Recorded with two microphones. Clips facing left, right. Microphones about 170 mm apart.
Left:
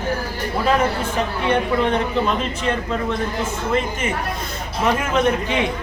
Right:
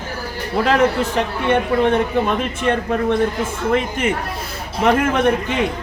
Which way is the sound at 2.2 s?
55° right (ahead or behind).